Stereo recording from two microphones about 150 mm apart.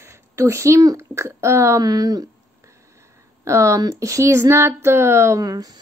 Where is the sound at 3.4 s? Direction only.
20° right (ahead or behind).